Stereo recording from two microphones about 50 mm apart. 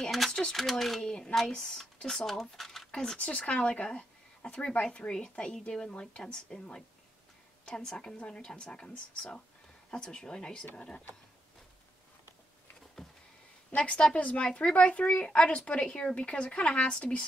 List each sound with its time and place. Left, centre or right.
0.3 s speech: centre
0.6 s a woman's voice: centre
2.5 s a sound: centre
2.9 s speech: centre
3.2 s a woman's voice: left
13.0 s a sound: centre
13.7 s a woman's voice: left